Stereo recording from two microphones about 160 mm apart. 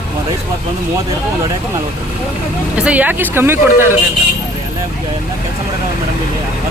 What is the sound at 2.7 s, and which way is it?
Speech, 10° right (ahead or behind).